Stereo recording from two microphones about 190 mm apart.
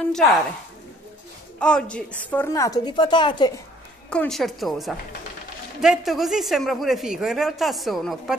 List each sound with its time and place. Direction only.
0.1 s speech: centre (ahead or behind)
1.6 s a woman's voice: 5° left (ahead or behind); by 3.6 s 20° left (ahead or behind)
4.1 s speech: 5° left (ahead or behind)